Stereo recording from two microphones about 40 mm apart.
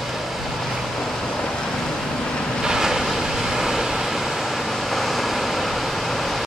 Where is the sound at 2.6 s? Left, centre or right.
Centre.